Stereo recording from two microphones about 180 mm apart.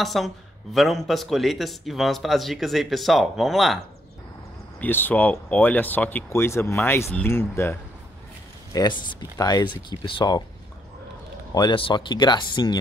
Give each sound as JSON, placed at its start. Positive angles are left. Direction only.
{"t": 0.0, "sound": "a man's voice", "side_deg": 0}
{"t": 4.7, "sound": "speech", "side_deg": 10}
{"t": 8.7, "sound": "speech", "side_deg": 25}
{"t": 11.5, "sound": "speech", "side_deg": 25}